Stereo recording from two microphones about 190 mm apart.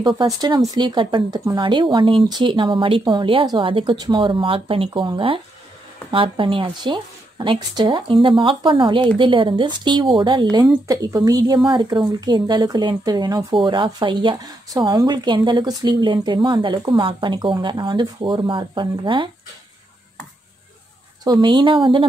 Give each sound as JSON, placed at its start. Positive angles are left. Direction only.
{"t": 0.0, "sound": "speech", "side_deg": -25}
{"t": 21.2, "sound": "speech", "side_deg": -20}